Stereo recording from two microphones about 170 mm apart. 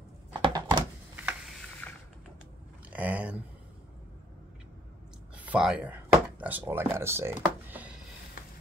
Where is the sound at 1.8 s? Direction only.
10° left (ahead or behind).